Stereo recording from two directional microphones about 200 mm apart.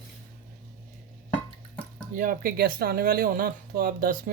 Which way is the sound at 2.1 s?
45° right (ahead or behind).